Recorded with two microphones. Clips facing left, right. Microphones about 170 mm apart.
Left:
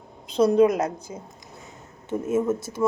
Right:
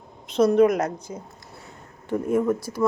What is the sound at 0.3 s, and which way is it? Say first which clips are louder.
Speech: even; 30° left (ahead or behind).